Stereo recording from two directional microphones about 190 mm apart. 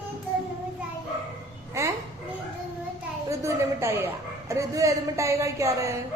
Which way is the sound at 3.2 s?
15° right (ahead or behind).